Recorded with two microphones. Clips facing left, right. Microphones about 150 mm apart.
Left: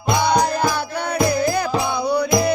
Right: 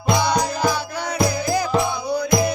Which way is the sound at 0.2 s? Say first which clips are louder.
Left 2 dB; 60° left (ahead or behind).